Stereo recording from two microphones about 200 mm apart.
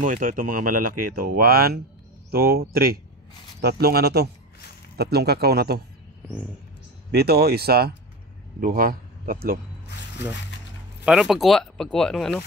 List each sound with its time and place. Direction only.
0.0 s speech: 40° right (ahead or behind)
7.1 s a man's voice: 50° right (ahead or behind)
11.1 s speech: centre (ahead or behind)